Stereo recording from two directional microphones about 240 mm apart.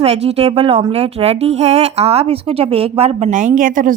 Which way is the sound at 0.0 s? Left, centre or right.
Right.